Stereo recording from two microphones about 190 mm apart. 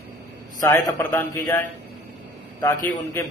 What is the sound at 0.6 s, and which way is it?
A man's voice, 15° left (ahead or behind).